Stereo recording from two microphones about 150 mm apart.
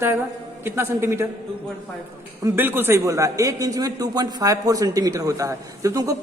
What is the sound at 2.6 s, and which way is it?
A man's voice, 15° right (ahead or behind).